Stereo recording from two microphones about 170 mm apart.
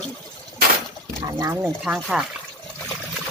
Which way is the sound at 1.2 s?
25° right (ahead or behind).